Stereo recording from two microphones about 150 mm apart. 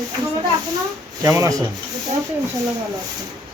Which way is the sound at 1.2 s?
20° right (ahead or behind).